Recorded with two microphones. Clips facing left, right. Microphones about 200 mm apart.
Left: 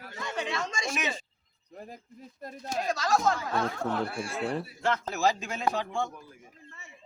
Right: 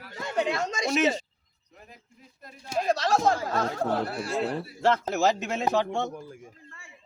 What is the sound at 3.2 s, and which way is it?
Speech, 35° right (ahead or behind).